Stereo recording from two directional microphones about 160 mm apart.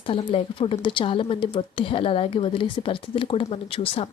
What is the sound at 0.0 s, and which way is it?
Speech, 35° left (ahead or behind).